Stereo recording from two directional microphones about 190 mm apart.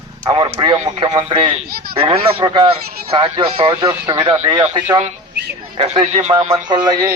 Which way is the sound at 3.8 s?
15° right (ahead or behind).